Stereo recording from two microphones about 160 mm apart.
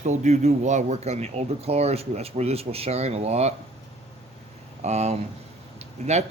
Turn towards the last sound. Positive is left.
turn(degrees=-45)  # may be behind; listen again after turning